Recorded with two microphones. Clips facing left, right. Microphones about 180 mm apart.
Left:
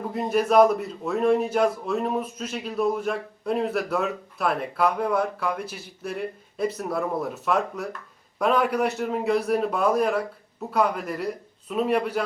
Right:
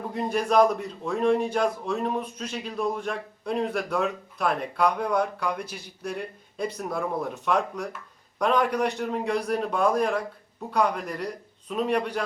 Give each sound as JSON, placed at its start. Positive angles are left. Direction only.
{"t": 0.1, "sound": "speech", "side_deg": 5}